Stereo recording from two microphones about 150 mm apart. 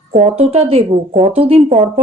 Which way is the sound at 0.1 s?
45° right (ahead or behind).